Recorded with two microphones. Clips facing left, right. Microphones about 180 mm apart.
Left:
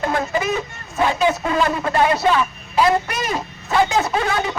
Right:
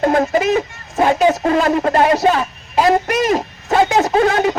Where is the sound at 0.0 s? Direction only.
45° right (ahead or behind).